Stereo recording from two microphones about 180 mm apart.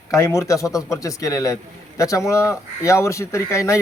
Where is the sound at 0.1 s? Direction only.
15° left (ahead or behind).